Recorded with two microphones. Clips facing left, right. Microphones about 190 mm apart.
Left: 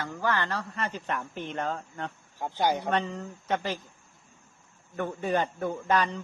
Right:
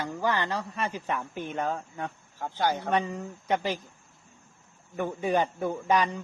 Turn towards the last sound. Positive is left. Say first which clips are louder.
# right 1 dB
turn(degrees=-10)  # may be behind; listen again after turning